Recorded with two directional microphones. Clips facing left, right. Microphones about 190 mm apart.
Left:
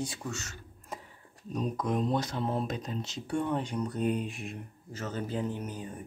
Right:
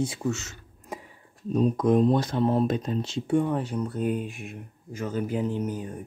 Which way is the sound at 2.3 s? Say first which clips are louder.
Right 9 dB; 55° right (ahead or behind).